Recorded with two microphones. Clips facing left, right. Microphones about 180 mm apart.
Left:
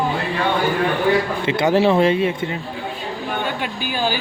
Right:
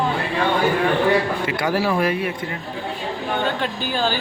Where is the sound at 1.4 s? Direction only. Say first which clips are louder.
Left 5 dB; 25° left (ahead or behind).